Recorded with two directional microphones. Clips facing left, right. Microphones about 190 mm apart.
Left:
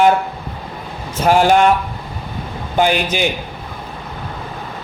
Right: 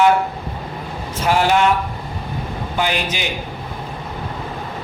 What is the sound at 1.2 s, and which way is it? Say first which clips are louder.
Speech: left 4 dB; 50° left (ahead or behind).